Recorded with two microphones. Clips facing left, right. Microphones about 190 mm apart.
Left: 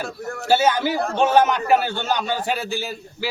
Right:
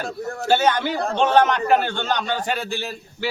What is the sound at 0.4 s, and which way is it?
A man's voice, 5° left (ahead or behind).